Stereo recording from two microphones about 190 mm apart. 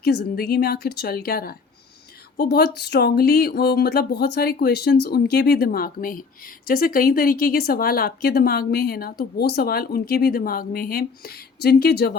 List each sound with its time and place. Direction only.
0.0 s speech: 55° left (ahead or behind)